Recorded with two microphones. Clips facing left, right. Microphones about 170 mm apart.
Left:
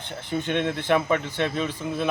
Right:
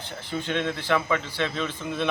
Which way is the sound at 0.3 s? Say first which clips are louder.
Left 3 dB; 20° left (ahead or behind).